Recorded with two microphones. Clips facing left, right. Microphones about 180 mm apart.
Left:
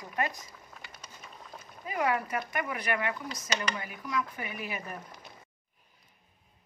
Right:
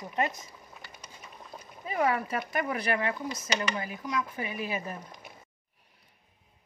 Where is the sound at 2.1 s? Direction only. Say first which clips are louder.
Right 1 dB; 30° right (ahead or behind).